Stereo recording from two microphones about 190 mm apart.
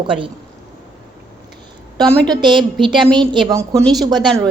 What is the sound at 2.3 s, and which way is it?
Speech, 25° right (ahead or behind).